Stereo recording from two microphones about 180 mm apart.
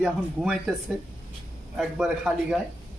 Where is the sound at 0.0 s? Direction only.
Centre (ahead or behind).